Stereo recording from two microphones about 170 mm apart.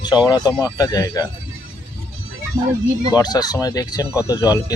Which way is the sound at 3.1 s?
25° left (ahead or behind).